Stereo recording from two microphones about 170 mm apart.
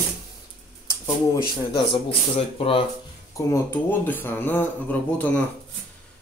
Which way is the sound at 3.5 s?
10° left (ahead or behind).